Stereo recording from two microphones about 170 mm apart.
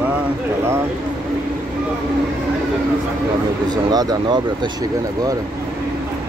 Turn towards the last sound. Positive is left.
turn(degrees=-25)  # may be behind; listen again after turning